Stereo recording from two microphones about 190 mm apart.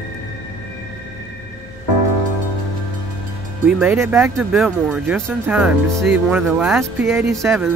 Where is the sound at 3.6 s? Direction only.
10° right (ahead or behind).